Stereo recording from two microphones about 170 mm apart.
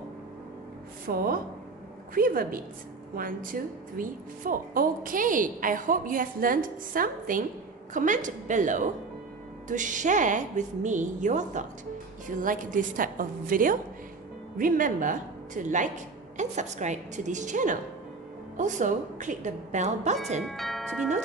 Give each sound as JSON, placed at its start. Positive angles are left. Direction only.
{"t": 1.1, "sound": "a woman's voice", "side_deg": -60}
{"t": 20.4, "sound": "speech", "side_deg": 0}